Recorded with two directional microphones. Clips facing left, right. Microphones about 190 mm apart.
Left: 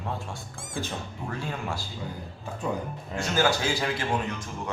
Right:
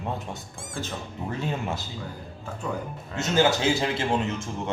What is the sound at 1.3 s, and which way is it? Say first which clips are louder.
Speech: right 4 dB; 20° right (ahead or behind).